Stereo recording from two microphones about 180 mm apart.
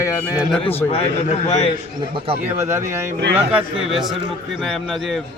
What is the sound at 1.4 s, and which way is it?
Speech, 35° left (ahead or behind).